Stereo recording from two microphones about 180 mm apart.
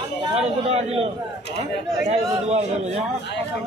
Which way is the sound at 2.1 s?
40° right (ahead or behind).